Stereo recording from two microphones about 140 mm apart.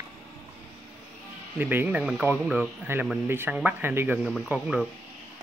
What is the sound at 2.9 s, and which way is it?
Speech, 15° right (ahead or behind).